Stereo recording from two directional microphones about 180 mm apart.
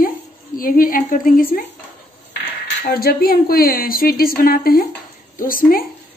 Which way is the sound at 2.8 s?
60° left (ahead or behind).